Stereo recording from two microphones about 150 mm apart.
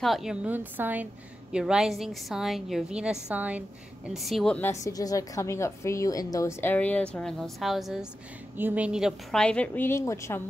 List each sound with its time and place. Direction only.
0.0 s a woman's voice: centre (ahead or behind)
4.6 s a woman's voice: 20° left (ahead or behind); by 9.4 s 5° right (ahead or behind)
9.4 s a woman's voice: 5° left (ahead or behind)